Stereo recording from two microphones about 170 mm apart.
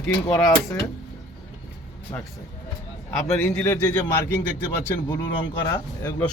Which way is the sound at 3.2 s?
10° left (ahead or behind).